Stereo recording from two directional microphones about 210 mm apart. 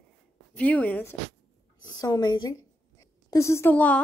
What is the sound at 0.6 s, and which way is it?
A woman's voice, 5° left (ahead or behind).